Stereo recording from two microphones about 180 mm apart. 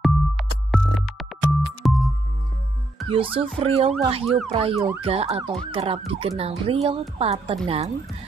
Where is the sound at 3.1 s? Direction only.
30° right (ahead or behind).